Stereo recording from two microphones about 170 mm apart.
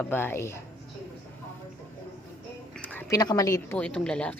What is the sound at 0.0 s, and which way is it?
Speech, 10° left (ahead or behind).